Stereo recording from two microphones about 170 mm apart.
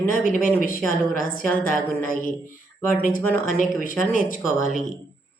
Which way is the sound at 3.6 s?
50° left (ahead or behind).